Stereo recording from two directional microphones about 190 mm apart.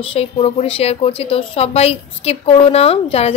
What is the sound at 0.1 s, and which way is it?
A woman's voice, 30° left (ahead or behind).